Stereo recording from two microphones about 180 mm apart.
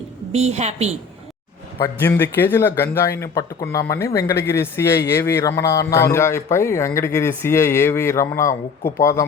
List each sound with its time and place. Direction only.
0.3 s a woman's voice: 35° right (ahead or behind)
1.8 s speech: 10° left (ahead or behind)